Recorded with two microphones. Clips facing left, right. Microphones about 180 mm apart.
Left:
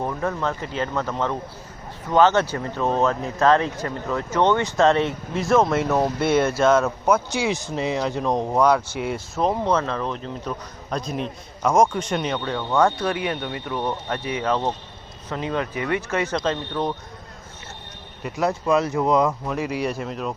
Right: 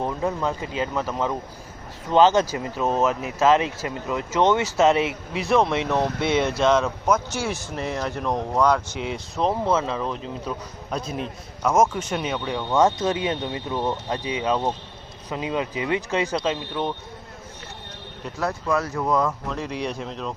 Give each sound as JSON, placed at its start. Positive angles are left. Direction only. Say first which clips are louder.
{"t": 0.0, "sound": "speech", "louder": "even", "side_deg": -20}
{"t": 18.3, "sound": "speech", "louder": "left 4 dB", "side_deg": 20}